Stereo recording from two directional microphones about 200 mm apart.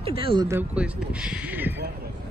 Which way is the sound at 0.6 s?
5° right (ahead or behind).